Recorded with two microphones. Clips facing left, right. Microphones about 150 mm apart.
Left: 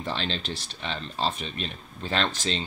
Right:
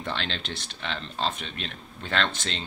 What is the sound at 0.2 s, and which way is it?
Speech, 70° right (ahead or behind).